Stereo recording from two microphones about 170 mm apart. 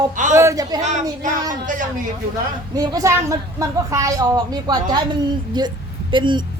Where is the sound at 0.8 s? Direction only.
45° right (ahead or behind).